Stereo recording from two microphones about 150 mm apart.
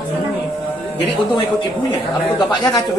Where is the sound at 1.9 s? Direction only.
30° left (ahead or behind).